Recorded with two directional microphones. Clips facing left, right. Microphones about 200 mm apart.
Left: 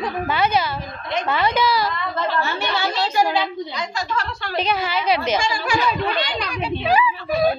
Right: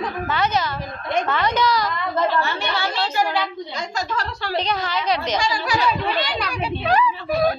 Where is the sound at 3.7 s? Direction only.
40° right (ahead or behind).